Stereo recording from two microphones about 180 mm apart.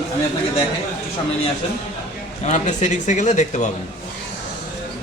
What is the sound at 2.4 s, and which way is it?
Speech, 40° left (ahead or behind).